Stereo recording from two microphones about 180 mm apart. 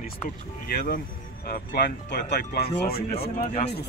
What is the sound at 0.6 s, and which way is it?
Speech, 55° left (ahead or behind).